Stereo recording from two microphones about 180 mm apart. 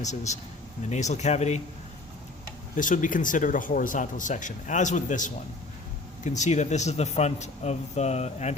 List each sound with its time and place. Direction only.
0.0 s speech: 40° left (ahead or behind)
2.7 s speech: 45° left (ahead or behind)